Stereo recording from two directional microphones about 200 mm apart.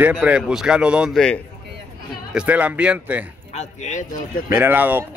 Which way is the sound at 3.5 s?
35° left (ahead or behind).